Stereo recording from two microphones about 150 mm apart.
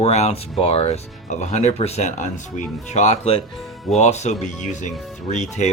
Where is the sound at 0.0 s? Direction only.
45° left (ahead or behind).